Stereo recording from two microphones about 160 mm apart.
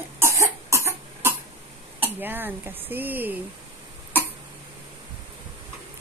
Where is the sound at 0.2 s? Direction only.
20° right (ahead or behind).